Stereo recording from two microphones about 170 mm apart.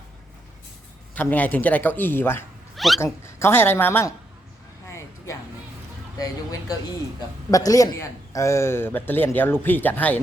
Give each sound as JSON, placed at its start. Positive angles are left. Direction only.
{"t": 1.1, "sound": "a man's voice", "side_deg": 10}
{"t": 2.7, "sound": "cat", "side_deg": 0}
{"t": 3.0, "sound": "a man's voice", "side_deg": 15}
{"t": 4.9, "sound": "a sound", "side_deg": 15}
{"t": 6.1, "sound": "a man's voice", "side_deg": 20}